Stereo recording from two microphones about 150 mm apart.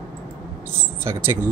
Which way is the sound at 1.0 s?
15° right (ahead or behind).